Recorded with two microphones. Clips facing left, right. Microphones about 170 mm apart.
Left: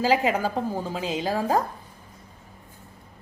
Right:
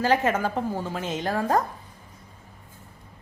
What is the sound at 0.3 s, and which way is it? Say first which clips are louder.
A woman's voice: even; 5° left (ahead or behind).